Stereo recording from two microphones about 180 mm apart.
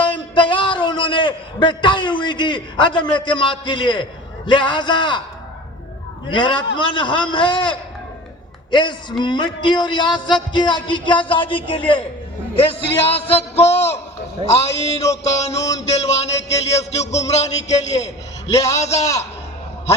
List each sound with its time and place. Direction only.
0.0 s a man's voice: 30° left (ahead or behind)
6.3 s a man's voice: 25° left (ahead or behind)
12.5 s music: 30° left (ahead or behind)
15.5 s a man's voice: 20° left (ahead or behind)
15.9 s music: 35° left (ahead or behind)
18.5 s a man's voice: 20° left (ahead or behind)
18.8 s music: 35° left (ahead or behind)